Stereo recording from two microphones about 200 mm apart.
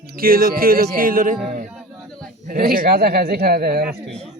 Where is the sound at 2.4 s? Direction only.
45° right (ahead or behind).